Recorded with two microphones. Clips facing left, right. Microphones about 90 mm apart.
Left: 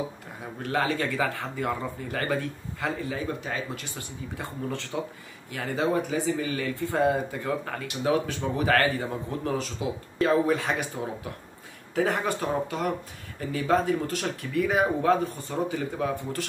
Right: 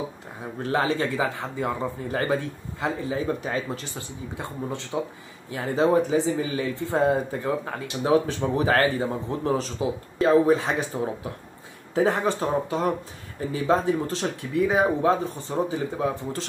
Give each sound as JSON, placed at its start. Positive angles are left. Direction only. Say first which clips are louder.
{"t": 0.6, "sound": "a man's voice", "louder": "right 3 dB", "side_deg": -30}
{"t": 3.4, "sound": "speech", "louder": "right 4 dB", "side_deg": -35}
{"t": 4.4, "sound": "a man's voice", "louder": "right 1 dB", "side_deg": -20}
{"t": 11.9, "sound": "a man's voice", "louder": "right 4 dB", "side_deg": -25}